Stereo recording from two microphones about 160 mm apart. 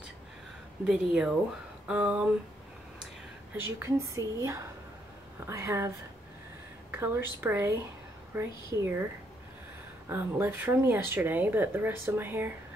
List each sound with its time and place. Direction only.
0.8 s speech: 5° right (ahead or behind)
3.5 s speech: 15° right (ahead or behind)
10.0 s speech: 15° right (ahead or behind)